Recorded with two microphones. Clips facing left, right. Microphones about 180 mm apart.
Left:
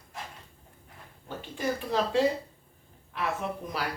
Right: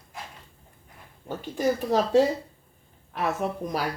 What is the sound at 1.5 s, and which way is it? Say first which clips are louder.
Speech: right 5 dB; 45° right (ahead or behind).